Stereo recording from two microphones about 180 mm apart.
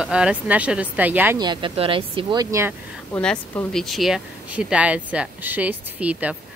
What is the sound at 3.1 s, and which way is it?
Speech, 10° left (ahead or behind).